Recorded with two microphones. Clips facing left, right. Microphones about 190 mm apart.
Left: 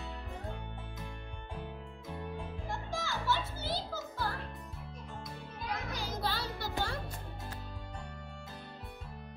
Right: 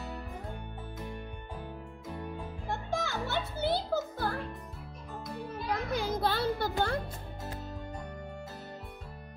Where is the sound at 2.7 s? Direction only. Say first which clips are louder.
Right 6 dB; 60° right (ahead or behind).